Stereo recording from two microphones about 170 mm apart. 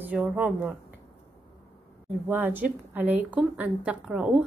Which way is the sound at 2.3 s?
10° right (ahead or behind).